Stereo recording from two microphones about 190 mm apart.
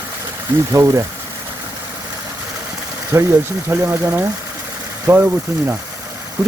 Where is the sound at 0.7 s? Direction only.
15° right (ahead or behind).